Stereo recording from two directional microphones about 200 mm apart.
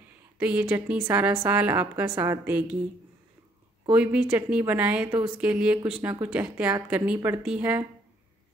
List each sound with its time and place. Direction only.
0.4 s a woman's voice: 5° right (ahead or behind)
3.9 s a woman's voice: 5° right (ahead or behind)